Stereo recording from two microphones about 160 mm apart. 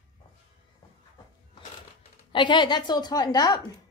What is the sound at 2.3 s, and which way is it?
A woman's voice, 30° left (ahead or behind).